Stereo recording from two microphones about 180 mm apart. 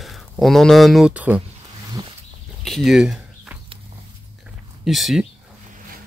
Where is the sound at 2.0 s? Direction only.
25° right (ahead or behind).